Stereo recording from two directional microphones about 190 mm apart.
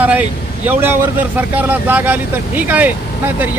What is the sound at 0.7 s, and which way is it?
Speech, 10° right (ahead or behind).